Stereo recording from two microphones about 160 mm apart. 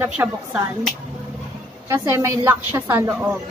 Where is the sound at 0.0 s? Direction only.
15° right (ahead or behind).